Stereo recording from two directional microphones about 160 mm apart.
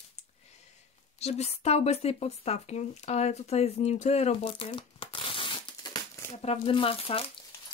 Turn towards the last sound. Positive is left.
turn(degrees=35)  # may be behind; listen again after turning